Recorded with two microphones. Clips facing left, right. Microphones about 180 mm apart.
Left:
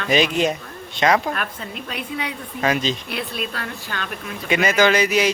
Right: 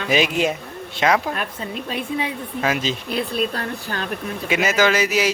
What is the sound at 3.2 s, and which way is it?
Speech, 35° right (ahead or behind).